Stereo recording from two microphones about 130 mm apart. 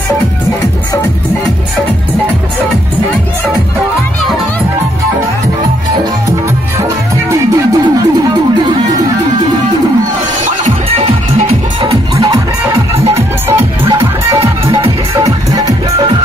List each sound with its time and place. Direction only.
6.8 s music: 25° right (ahead or behind)
13.5 s music: 25° right (ahead or behind)
14.7 s music: 40° right (ahead or behind)
15.5 s music: 30° right (ahead or behind)